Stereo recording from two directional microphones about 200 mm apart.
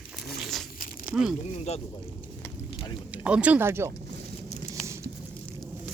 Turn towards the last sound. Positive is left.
turn(degrees=-10)  # may be behind; listen again after turning